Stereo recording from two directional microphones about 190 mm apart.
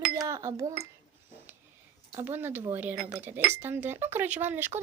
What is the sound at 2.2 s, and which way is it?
Speech, 10° right (ahead or behind).